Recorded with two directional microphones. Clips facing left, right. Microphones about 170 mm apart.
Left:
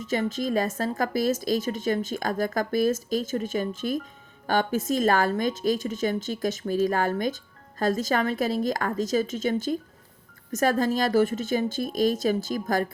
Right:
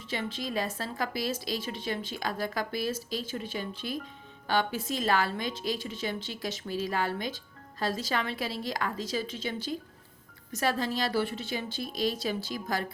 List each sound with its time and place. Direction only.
0.0 s a woman's voice: 45° left (ahead or behind)